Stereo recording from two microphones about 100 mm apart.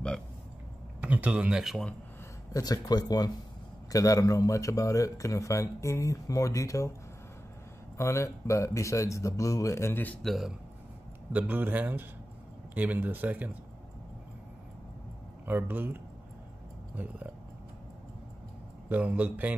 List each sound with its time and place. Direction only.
1.0 s speech: 15° right (ahead or behind)
2.5 s a man's voice: 40° left (ahead or behind)
8.0 s a man's voice: 30° left (ahead or behind)
10.2 s speech: centre (ahead or behind)
11.3 s speech: 20° right (ahead or behind)
15.4 s speech: 20° right (ahead or behind)
18.9 s speech: 20° right (ahead or behind)